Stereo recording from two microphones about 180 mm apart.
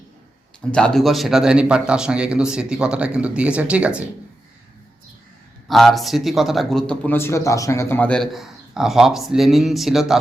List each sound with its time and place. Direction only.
0.7 s a man's voice: 5° left (ahead or behind)
5.6 s a man's voice: centre (ahead or behind)